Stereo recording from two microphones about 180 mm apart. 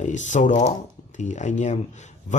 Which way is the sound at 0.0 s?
40° left (ahead or behind).